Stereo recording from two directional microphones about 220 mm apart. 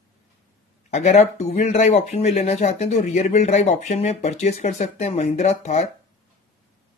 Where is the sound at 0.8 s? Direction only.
30° left (ahead or behind).